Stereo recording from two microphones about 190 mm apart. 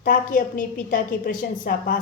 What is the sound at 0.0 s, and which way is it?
A woman's voice, 45° left (ahead or behind).